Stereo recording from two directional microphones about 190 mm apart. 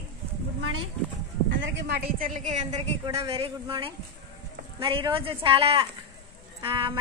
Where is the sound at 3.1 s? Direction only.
15° right (ahead or behind).